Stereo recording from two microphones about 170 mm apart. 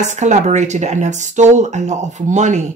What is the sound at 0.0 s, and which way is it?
A woman's voice, 45° right (ahead or behind).